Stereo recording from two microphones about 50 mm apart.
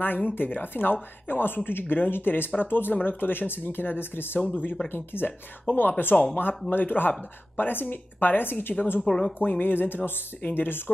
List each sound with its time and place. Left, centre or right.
0.0 s speech: left
9.0 s speech: centre
9.4 s speech: left